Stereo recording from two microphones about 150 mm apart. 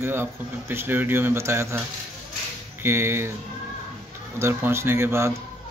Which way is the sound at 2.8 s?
15° right (ahead or behind).